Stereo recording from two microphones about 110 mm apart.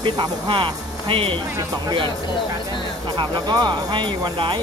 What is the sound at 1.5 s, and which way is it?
Speech, 40° right (ahead or behind).